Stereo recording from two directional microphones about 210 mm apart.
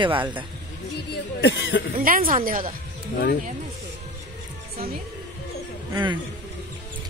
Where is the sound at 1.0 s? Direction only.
60° left (ahead or behind).